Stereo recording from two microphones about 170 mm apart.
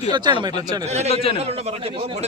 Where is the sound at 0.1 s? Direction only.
25° right (ahead or behind).